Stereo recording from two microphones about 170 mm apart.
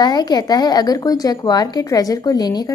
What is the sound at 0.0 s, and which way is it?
A woman's voice, 25° left (ahead or behind).